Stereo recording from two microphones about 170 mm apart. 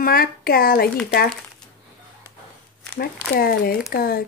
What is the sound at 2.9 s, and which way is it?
A woman's voice, 65° left (ahead or behind).